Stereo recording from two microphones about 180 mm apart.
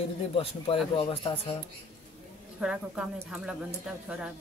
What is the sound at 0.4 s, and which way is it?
Speech, 30° left (ahead or behind).